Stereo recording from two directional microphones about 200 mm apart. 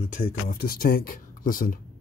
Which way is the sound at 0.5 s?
50° left (ahead or behind).